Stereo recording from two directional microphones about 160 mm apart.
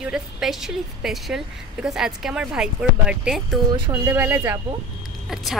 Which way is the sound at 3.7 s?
30° right (ahead or behind).